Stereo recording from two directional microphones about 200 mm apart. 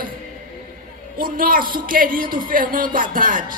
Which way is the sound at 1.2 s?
45° right (ahead or behind).